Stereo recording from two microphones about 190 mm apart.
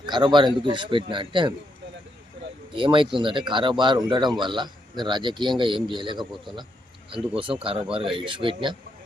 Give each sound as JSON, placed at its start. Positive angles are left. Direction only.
{"t": 0.0, "sound": "speech", "side_deg": -25}
{"t": 2.7, "sound": "speech", "side_deg": -25}